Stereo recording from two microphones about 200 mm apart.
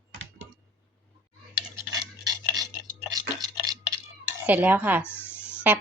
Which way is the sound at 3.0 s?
20° right (ahead or behind).